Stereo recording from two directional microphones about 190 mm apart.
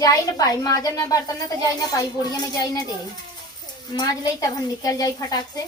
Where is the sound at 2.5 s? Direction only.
20° left (ahead or behind).